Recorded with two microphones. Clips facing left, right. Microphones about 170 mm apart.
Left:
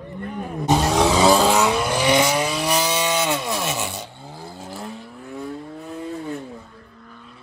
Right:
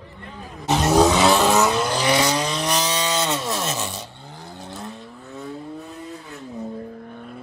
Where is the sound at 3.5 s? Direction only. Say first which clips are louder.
Left 1 dB; centre (ahead or behind).